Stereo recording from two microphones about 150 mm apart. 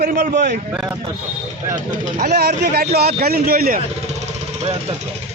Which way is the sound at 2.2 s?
90° right.